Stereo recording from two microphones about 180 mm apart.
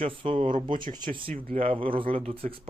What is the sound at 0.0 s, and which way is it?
Speech, 30° right (ahead or behind).